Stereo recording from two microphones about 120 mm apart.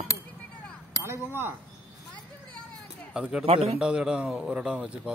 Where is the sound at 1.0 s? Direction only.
20° right (ahead or behind).